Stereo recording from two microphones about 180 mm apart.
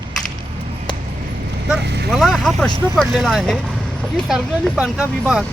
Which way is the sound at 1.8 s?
70° right (ahead or behind).